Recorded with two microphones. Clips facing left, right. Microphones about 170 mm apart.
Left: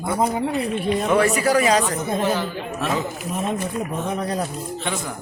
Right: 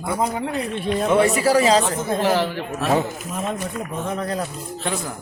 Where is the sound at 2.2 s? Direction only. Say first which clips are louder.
Right 3 dB; 90° right.